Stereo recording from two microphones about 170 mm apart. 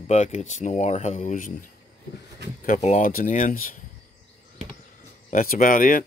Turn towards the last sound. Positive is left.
turn(degrees=55)  # may be behind; listen again after turning